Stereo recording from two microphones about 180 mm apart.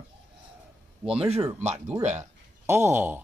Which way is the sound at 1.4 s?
20° right (ahead or behind).